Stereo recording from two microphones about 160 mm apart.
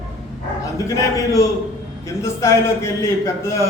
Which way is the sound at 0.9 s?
20° left (ahead or behind).